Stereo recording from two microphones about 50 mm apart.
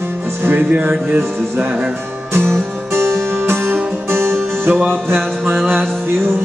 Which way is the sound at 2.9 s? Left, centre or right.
Right.